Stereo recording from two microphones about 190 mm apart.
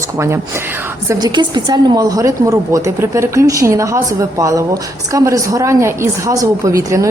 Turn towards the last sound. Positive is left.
turn(degrees=-15)  # may be behind; listen again after turning